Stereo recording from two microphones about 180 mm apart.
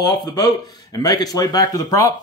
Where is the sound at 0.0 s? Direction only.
20° left (ahead or behind).